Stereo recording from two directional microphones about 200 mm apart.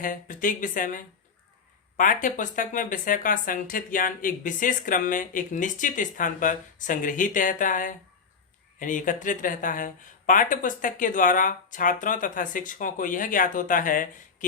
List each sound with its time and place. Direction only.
0.0 s speech: 40° left (ahead or behind)